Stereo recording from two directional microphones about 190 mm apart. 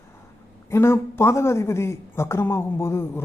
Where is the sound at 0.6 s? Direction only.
15° left (ahead or behind).